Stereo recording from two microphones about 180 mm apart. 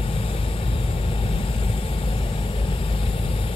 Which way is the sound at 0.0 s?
30° left (ahead or behind).